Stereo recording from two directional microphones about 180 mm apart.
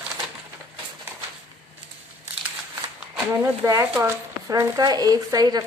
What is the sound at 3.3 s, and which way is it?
Speech, 15° right (ahead or behind).